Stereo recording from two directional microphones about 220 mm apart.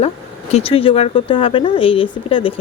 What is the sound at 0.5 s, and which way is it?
Speech, 25° left (ahead or behind).